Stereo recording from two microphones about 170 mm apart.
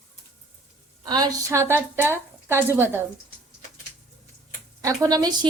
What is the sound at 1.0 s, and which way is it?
A woman's voice, 20° right (ahead or behind).